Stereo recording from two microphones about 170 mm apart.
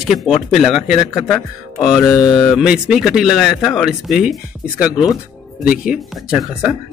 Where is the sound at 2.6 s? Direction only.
5° right (ahead or behind).